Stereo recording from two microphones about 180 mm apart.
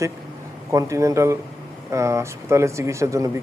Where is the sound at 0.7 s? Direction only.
15° right (ahead or behind).